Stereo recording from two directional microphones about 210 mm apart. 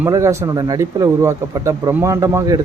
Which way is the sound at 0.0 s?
15° right (ahead or behind).